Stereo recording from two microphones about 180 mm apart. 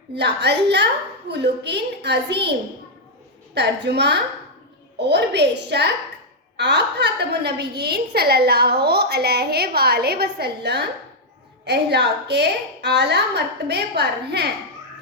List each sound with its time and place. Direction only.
0.1 s a woman's voice: 70° right (ahead or behind)